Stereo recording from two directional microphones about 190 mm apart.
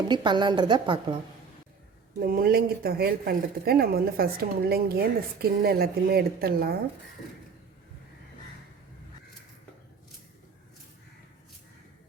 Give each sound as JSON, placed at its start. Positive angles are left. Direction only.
{"t": 0.1, "sound": "a woman's voice", "side_deg": -25}
{"t": 2.2, "sound": "speech", "side_deg": -50}